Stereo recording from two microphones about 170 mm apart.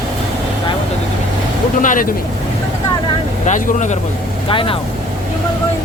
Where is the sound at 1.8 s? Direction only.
50° left (ahead or behind).